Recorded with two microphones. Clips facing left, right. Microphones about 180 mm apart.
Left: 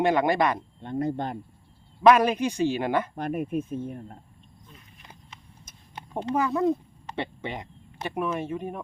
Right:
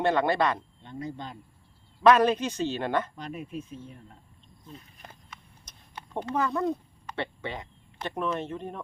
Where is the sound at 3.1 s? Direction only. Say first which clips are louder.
Left 9 dB; 55° left (ahead or behind).